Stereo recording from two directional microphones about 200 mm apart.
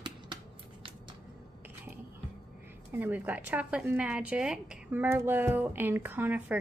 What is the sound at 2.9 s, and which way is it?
A woman's voice, 10° right (ahead or behind).